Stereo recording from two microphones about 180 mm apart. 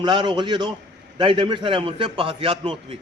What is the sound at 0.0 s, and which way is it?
A man's voice, 25° right (ahead or behind).